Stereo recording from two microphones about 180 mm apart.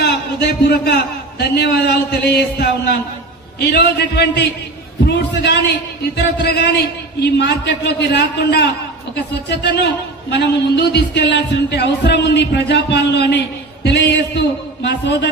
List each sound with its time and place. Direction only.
0.0 s a man's voice: 65° left (ahead or behind)